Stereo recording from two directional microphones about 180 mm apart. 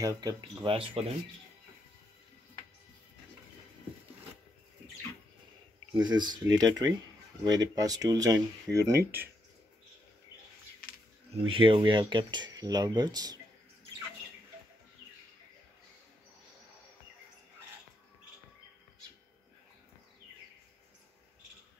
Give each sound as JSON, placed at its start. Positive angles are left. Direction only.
{"t": 0.0, "sound": "speech", "side_deg": -20}
{"t": 5.9, "sound": "speech", "side_deg": -25}
{"t": 11.3, "sound": "speech", "side_deg": -30}